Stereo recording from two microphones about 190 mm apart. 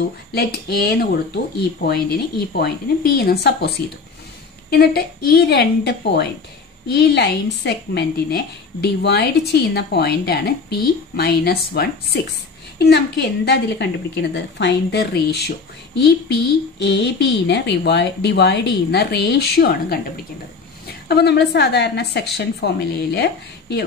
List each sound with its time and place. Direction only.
0.3 s speech: 55° left (ahead or behind)
21.1 s speech: 60° left (ahead or behind)